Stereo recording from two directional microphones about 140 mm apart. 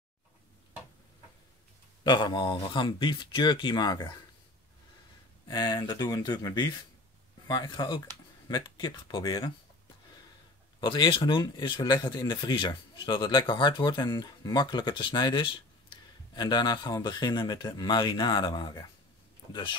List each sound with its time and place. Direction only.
2.0 s speech: 35° left (ahead or behind)
5.5 s speech: 30° left (ahead or behind)
10.8 s speech: 35° left (ahead or behind)